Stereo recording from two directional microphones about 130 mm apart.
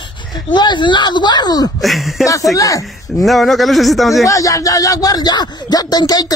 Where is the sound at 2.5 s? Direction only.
25° left (ahead or behind).